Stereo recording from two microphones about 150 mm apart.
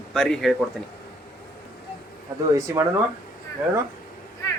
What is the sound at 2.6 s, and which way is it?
Speech, 20° right (ahead or behind).